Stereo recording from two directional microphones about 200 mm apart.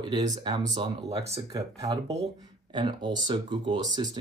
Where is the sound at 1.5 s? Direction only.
20° right (ahead or behind).